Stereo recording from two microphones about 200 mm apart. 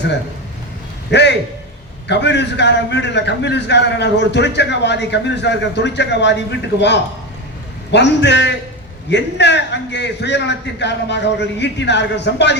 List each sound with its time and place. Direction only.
1.1 s a man's voice: 60° left (ahead or behind)